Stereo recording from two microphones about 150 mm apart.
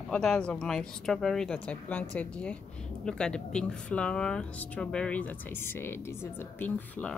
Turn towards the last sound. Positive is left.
turn(degrees=10)  # may be behind; listen again after turning